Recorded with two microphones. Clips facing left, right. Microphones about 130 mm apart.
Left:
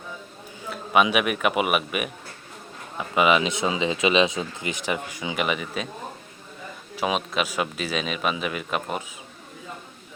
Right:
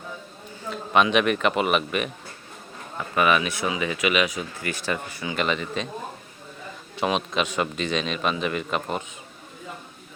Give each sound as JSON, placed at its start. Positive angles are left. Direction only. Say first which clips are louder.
{"t": 0.7, "sound": "speech", "louder": "even", "side_deg": 10}
{"t": 6.9, "sound": "a man's voice", "louder": "right 1 dB", "side_deg": 5}